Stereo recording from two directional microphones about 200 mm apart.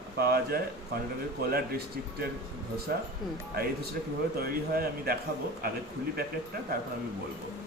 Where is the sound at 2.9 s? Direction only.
50° right (ahead or behind).